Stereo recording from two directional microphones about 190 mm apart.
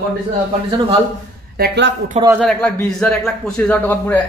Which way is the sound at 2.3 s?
5° left (ahead or behind).